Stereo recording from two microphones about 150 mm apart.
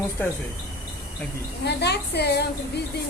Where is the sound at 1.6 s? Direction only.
90° left.